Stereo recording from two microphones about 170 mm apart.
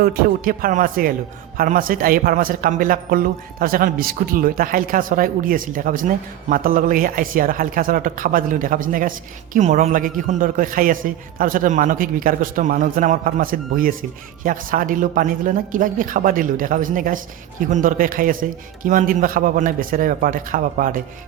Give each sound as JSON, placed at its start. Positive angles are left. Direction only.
{"t": 0.0, "sound": "speech", "side_deg": -55}